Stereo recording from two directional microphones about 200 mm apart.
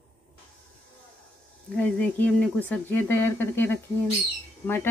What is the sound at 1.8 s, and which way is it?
Speech, 5° left (ahead or behind).